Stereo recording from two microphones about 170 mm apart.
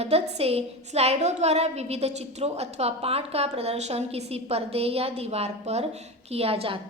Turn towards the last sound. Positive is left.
turn(degrees=-35)  # may be behind; listen again after turning